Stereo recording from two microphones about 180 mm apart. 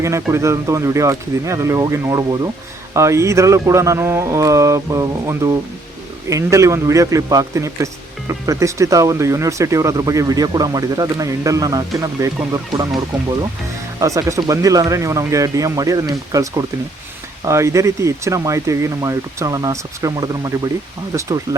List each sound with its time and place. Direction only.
0.0 s speech: 15° right (ahead or behind)
14.0 s speech: 20° right (ahead or behind)